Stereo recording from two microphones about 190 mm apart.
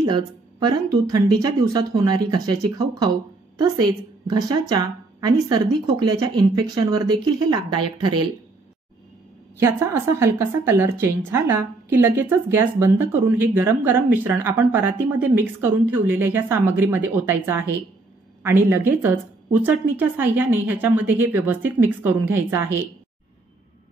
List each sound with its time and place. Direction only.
0.0 s a woman's voice: 20° right (ahead or behind)
9.6 s a woman's voice: 15° right (ahead or behind)